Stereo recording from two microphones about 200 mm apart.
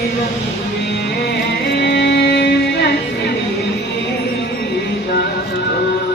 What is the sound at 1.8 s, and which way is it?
Music, 55° left (ahead or behind).